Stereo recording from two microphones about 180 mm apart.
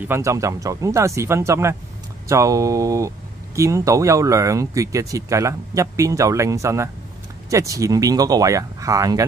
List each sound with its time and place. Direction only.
0.0 s speech: 15° right (ahead or behind)